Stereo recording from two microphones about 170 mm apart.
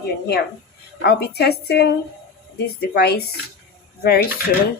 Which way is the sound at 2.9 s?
70° left (ahead or behind).